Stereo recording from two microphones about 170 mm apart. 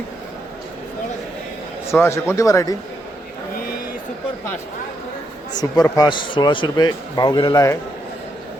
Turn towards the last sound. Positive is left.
turn(degrees=20)  # may be behind; listen again after turning